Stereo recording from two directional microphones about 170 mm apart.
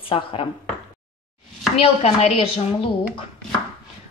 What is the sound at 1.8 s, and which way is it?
A woman's voice, 40° left (ahead or behind).